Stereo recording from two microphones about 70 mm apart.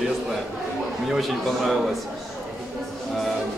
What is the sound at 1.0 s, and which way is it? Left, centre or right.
Speech, centre.